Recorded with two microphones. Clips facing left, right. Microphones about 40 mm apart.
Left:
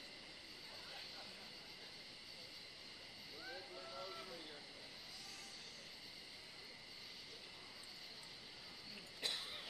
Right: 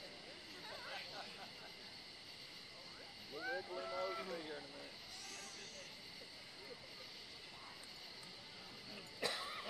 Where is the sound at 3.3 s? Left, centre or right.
Right.